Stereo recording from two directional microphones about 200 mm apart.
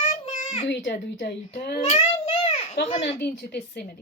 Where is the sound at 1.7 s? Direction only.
35° left (ahead or behind).